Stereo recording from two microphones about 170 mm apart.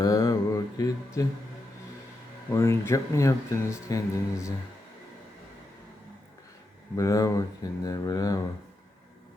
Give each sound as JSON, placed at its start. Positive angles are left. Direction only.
{"t": 0.0, "sound": "a sound", "side_deg": 20}
{"t": 2.5, "sound": "speech", "side_deg": 15}
{"t": 6.9, "sound": "speech", "side_deg": 20}